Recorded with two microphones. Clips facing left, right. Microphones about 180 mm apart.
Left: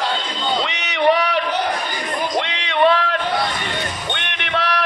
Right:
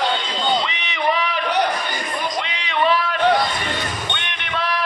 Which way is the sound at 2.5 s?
70° left (ahead or behind).